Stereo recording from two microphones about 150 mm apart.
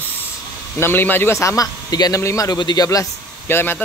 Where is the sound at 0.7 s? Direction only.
15° left (ahead or behind).